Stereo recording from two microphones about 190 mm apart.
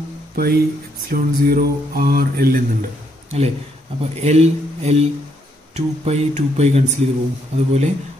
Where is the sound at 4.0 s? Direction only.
35° right (ahead or behind).